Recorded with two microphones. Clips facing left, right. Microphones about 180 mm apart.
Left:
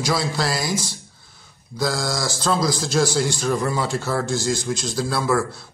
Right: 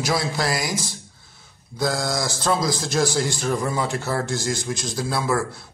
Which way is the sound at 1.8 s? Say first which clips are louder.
Even; 20° right (ahead or behind).